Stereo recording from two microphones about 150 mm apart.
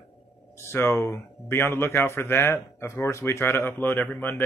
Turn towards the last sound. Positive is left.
turn(degrees=10)  # may be behind; listen again after turning